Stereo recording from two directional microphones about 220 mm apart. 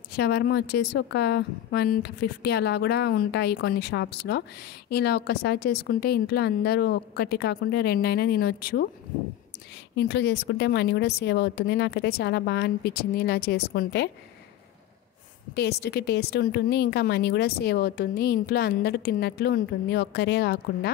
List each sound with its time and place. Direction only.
0.1 s a woman's voice: 50° left (ahead or behind)
9.9 s a woman's voice: 50° left (ahead or behind)
15.5 s a woman's voice: 50° left (ahead or behind)